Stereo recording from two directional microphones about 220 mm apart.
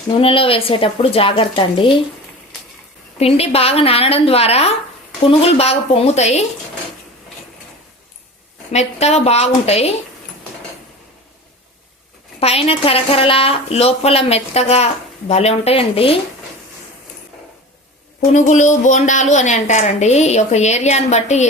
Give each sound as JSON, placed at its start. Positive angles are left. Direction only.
{"t": 0.2, "sound": "a woman's voice", "side_deg": 25}
{"t": 3.2, "sound": "a woman's voice", "side_deg": 25}
{"t": 8.7, "sound": "a woman's voice", "side_deg": 30}
{"t": 12.4, "sound": "a woman's voice", "side_deg": 25}
{"t": 18.3, "sound": "a woman's voice", "side_deg": 35}